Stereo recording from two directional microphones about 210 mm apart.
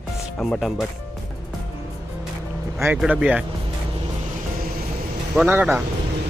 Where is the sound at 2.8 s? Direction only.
10° right (ahead or behind).